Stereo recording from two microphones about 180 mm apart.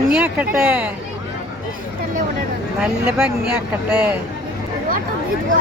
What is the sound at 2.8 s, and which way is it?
Speech, 5° right (ahead or behind).